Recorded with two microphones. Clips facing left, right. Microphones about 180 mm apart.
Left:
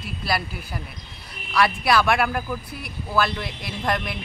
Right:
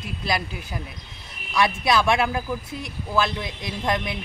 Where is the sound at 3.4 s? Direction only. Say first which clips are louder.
Right 1 dB; 20° right (ahead or behind).